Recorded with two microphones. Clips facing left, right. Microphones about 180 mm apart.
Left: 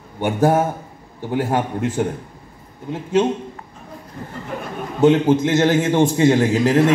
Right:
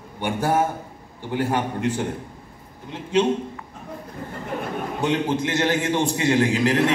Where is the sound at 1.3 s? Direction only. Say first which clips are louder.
Left 3 dB; 45° left (ahead or behind).